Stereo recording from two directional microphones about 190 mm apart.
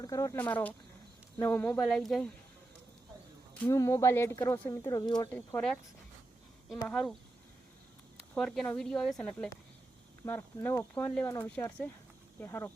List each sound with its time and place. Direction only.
0.0 s speech: 20° left (ahead or behind)
3.7 s speech: 15° left (ahead or behind)
5.3 s speech: 10° left (ahead or behind)
6.8 s speech: 5° left (ahead or behind)
8.4 s speech: 5° left (ahead or behind)